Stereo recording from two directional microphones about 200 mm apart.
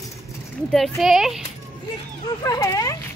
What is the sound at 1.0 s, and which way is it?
Speech, centre (ahead or behind).